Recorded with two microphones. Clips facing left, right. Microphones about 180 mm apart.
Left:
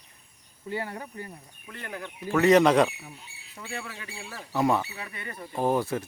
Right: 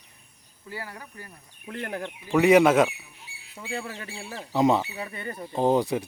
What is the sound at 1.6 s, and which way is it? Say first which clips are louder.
Speech: right 7 dB; 75° right (ahead or behind).